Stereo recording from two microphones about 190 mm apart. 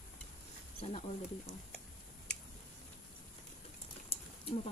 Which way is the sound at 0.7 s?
30° left (ahead or behind).